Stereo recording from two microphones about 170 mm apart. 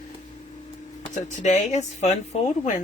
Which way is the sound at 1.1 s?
45° left (ahead or behind).